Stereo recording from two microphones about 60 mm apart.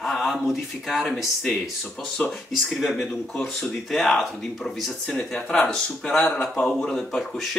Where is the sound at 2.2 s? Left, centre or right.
Centre.